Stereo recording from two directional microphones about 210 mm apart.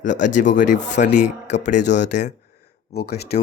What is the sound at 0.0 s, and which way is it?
Speech, 35° left (ahead or behind).